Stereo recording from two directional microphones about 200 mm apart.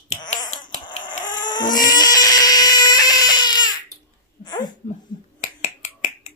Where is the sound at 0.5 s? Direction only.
35° left (ahead or behind).